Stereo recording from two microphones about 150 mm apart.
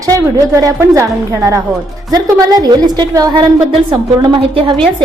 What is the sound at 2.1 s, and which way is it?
A woman's voice, 25° right (ahead or behind).